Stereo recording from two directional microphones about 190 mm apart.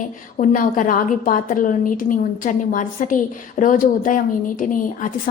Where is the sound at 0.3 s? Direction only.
45° left (ahead or behind).